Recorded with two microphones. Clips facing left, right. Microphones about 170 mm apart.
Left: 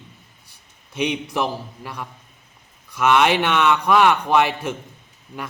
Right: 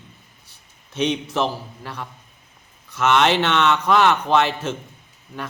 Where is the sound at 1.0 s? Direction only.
10° left (ahead or behind).